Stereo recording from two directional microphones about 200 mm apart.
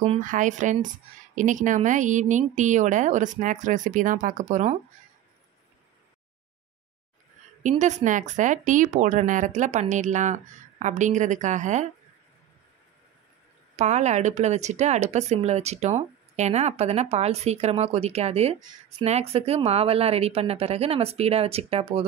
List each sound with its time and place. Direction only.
0.2 s speech: 40° right (ahead or behind)
7.6 s speech: 35° right (ahead or behind)
13.7 s speech: 35° right (ahead or behind)